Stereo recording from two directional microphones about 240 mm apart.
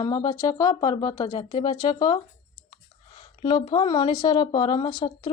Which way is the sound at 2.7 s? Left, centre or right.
Centre.